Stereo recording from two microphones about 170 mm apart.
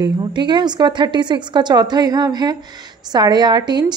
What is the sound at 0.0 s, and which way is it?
A woman's voice, 25° right (ahead or behind).